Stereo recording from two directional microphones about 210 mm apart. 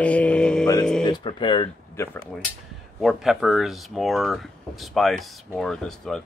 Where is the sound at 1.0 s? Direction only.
20° left (ahead or behind).